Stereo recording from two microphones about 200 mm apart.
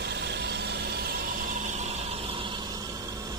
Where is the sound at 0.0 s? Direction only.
55° right (ahead or behind).